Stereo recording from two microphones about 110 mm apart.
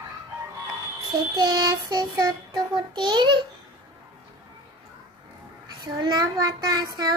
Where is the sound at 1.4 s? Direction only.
35° right (ahead or behind).